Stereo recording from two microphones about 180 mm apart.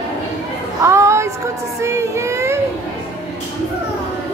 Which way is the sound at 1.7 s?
15° right (ahead or behind).